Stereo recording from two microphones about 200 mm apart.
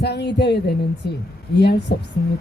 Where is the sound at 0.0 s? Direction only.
55° left (ahead or behind).